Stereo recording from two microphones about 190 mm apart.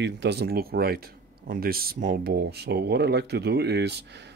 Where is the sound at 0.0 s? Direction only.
65° right (ahead or behind).